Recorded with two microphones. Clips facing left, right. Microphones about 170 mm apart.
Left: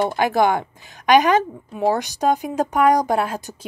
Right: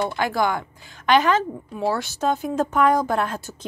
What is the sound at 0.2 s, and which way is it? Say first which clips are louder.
A woman's voice: left 6 dB; 20° left (ahead or behind).